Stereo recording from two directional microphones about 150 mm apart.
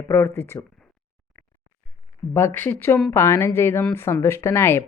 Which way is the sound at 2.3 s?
15° left (ahead or behind).